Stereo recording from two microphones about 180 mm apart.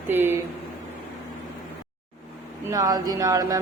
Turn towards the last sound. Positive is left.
turn(degrees=-20)  # may be behind; listen again after turning